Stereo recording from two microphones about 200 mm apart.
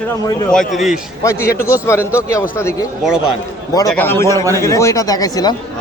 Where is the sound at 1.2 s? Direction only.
15° left (ahead or behind).